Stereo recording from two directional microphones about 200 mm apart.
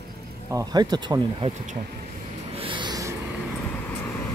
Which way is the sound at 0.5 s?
20° right (ahead or behind).